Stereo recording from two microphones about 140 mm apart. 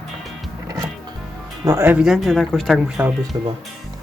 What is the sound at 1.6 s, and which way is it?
Speech, 15° right (ahead or behind).